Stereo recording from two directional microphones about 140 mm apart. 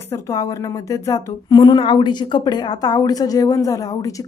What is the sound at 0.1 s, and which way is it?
A woman's voice, 25° left (ahead or behind).